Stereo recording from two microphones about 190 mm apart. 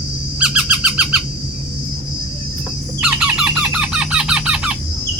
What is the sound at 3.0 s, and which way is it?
Squawk, 5° right (ahead or behind).